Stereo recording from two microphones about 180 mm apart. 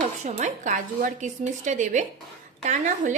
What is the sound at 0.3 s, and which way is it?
A woman's voice, 40° right (ahead or behind).